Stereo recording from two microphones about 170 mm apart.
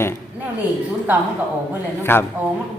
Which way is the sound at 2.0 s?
15° left (ahead or behind).